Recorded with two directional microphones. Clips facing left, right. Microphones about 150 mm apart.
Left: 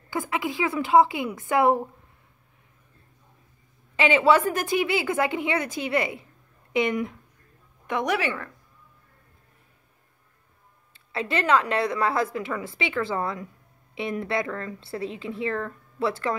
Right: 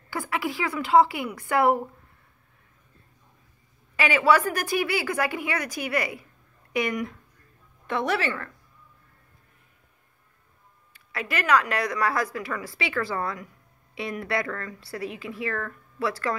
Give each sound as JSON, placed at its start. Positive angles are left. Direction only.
{"t": 0.1, "sound": "a woman's voice", "side_deg": 20}
{"t": 3.9, "sound": "a woman's voice", "side_deg": 25}
{"t": 10.9, "sound": "a woman's voice", "side_deg": 25}